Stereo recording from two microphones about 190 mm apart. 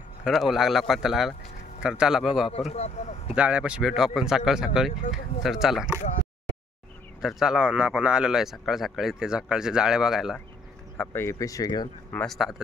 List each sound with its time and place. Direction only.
0.2 s speech: centre (ahead or behind)
2.7 s speech: 35° left (ahead or behind)
3.3 s speech: 5° right (ahead or behind)
7.2 s speech: centre (ahead or behind)
11.0 s speech: 15° left (ahead or behind)
12.1 s speech: 5° left (ahead or behind)